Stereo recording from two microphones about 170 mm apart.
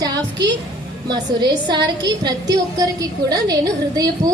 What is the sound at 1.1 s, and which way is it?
A woman's voice, 25° right (ahead or behind).